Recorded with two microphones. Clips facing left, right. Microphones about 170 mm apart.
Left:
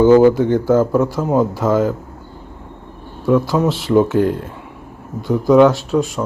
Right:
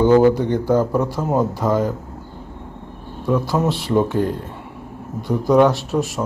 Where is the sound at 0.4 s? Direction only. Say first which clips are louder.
Left 4 dB; 15° right (ahead or behind).